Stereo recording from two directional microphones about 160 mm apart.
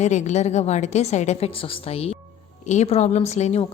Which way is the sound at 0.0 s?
45° left (ahead or behind).